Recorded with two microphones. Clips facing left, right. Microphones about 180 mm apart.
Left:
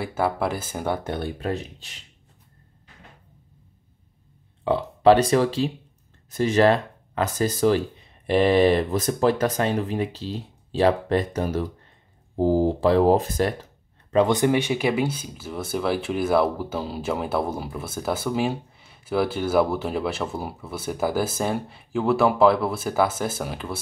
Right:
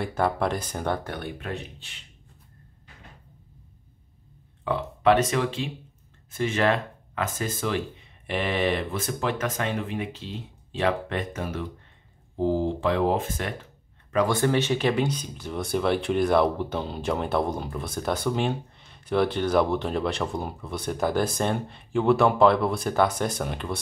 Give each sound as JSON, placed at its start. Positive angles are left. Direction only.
{"t": 0.0, "sound": "speech", "side_deg": 5}
{"t": 1.0, "sound": "speech", "side_deg": 25}
{"t": 4.6, "sound": "speech", "side_deg": 30}
{"t": 14.1, "sound": "speech", "side_deg": 20}